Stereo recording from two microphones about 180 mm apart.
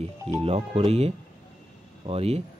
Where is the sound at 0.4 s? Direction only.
35° right (ahead or behind).